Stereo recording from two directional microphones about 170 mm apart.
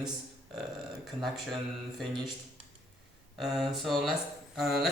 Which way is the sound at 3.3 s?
Centre (ahead or behind).